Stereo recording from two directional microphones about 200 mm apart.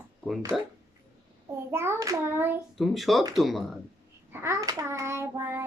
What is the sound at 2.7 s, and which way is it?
Speech, centre (ahead or behind).